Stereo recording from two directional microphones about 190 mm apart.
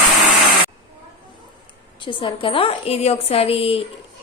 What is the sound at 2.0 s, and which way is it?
A woman's voice, 25° left (ahead or behind).